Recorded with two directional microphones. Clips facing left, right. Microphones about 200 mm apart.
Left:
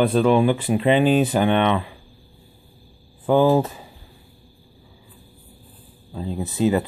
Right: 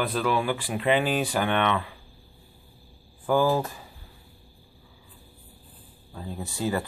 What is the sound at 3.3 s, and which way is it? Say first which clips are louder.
Speech: left 6 dB; 20° left (ahead or behind).